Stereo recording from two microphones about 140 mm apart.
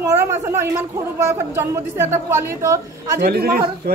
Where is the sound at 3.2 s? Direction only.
90° right.